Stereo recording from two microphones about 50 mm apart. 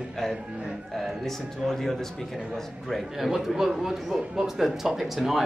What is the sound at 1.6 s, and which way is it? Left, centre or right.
A man's voice, centre.